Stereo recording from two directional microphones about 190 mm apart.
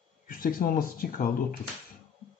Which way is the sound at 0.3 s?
50° left (ahead or behind).